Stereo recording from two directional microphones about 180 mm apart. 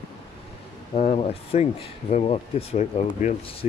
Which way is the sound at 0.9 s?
35° left (ahead or behind).